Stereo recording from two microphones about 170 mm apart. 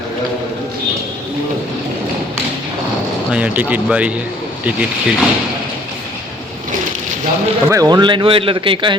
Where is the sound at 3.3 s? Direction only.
10° right (ahead or behind).